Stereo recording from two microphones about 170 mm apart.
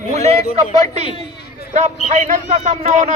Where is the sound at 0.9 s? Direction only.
35° right (ahead or behind).